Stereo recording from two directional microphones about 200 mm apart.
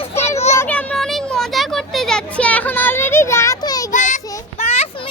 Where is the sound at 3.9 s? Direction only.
40° left (ahead or behind).